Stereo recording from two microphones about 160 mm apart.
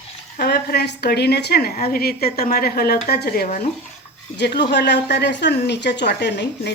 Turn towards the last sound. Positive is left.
turn(degrees=90)